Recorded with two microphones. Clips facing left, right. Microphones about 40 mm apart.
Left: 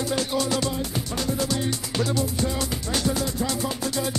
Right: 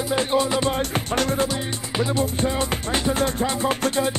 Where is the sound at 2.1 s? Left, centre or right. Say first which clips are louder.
Right 3 dB; right.